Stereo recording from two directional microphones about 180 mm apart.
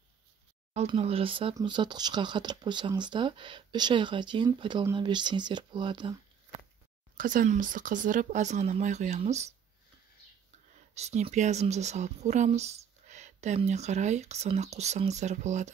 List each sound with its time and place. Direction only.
0.7 s speech: 35° right (ahead or behind)
7.2 s speech: 50° right (ahead or behind)
11.0 s speech: 35° right (ahead or behind)